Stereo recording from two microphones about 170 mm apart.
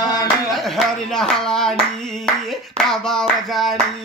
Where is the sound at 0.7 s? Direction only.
Centre (ahead or behind).